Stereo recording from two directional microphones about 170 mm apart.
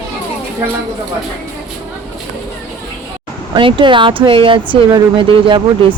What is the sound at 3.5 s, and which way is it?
Speech, 30° right (ahead or behind).